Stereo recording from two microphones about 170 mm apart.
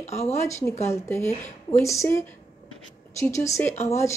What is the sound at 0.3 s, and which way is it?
Speech, 15° left (ahead or behind).